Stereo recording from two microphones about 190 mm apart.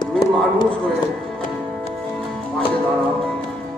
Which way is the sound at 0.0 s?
20° left (ahead or behind).